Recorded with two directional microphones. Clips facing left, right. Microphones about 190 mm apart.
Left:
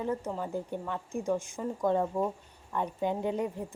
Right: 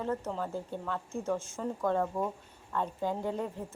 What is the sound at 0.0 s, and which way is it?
A woman's voice, 10° left (ahead or behind).